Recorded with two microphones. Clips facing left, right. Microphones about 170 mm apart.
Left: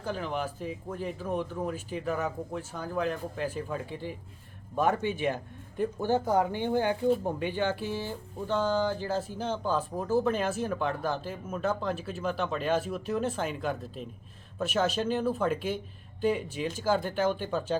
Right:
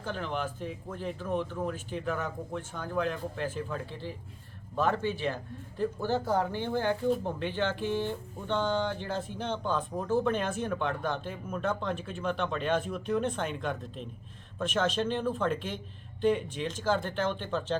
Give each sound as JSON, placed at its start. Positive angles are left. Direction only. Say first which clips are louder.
{"t": 0.0, "sound": "speech", "louder": "left 1 dB", "side_deg": 5}